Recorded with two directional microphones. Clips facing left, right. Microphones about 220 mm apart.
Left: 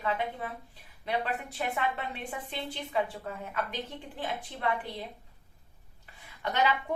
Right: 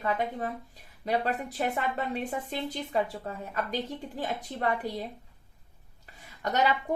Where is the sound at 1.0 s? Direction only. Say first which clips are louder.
Right 4 dB; 40° right (ahead or behind).